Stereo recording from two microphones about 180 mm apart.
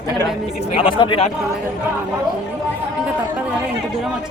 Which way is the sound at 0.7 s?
30° left (ahead or behind).